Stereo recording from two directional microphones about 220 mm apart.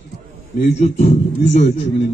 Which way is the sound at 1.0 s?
30° left (ahead or behind).